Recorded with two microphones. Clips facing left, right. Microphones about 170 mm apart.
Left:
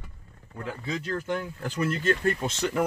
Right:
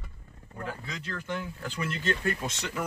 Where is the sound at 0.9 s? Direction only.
40° left (ahead or behind).